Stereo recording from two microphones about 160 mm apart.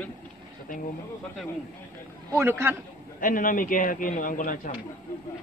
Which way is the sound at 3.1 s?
60° left (ahead or behind).